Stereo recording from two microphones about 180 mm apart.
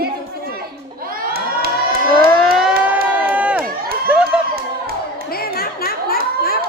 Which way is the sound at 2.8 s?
10° right (ahead or behind).